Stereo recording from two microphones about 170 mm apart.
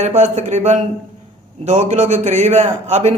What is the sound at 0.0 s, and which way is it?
A man's voice, 40° right (ahead or behind).